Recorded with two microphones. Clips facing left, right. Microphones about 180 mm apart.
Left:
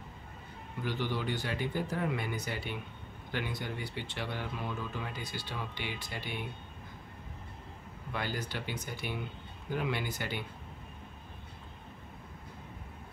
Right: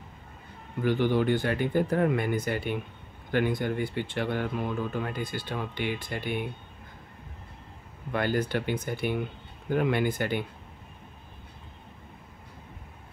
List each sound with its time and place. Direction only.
0.8 s speech: 55° right (ahead or behind)
8.1 s speech: 55° right (ahead or behind)